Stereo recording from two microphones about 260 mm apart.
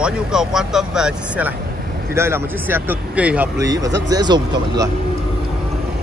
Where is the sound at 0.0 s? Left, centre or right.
Centre.